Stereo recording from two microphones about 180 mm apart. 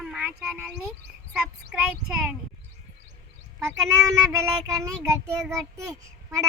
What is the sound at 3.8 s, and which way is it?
Child singing, 15° right (ahead or behind).